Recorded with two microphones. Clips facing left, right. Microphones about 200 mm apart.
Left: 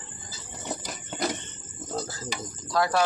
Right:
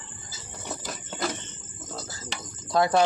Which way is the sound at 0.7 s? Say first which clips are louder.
Left 1 dB; 20° left (ahead or behind).